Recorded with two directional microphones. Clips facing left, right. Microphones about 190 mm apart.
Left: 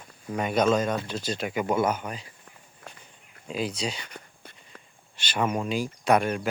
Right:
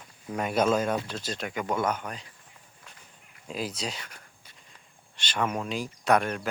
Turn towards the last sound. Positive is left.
turn(degrees=5)  # may be behind; listen again after turning